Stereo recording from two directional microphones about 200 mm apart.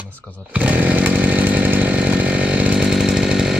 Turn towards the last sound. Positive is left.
turn(degrees=0)  # may be behind; listen again after turning